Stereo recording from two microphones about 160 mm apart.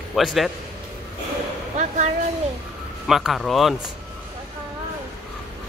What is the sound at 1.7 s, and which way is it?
Speech, 50° right (ahead or behind).